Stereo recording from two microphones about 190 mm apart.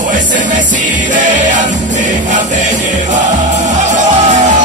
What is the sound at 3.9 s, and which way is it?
Music, 40° right (ahead or behind).